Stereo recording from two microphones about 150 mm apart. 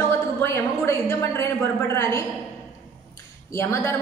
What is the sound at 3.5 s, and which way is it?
Speech, 20° left (ahead or behind).